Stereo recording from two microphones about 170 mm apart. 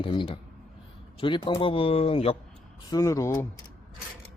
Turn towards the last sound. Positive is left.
turn(degrees=20)  # may be behind; listen again after turning